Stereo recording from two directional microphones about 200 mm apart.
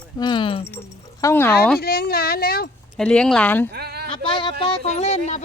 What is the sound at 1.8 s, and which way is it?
Speech, 50° left (ahead or behind).